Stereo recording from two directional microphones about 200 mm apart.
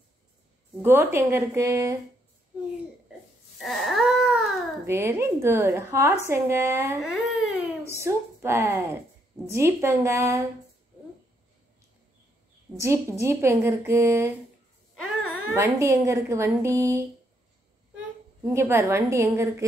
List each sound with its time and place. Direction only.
0.8 s a woman's voice: 10° right (ahead or behind)
3.5 s baby cry: centre (ahead or behind)
4.8 s a woman's voice: 10° right (ahead or behind)
12.7 s a woman's voice: 15° right (ahead or behind)
15.0 s a sound: 90° left
15.5 s a woman's voice: 15° right (ahead or behind)
18.5 s a woman's voice: 10° right (ahead or behind)